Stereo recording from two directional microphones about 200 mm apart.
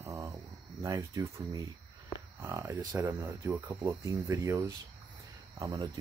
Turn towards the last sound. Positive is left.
turn(degrees=-20)  # may be behind; listen again after turning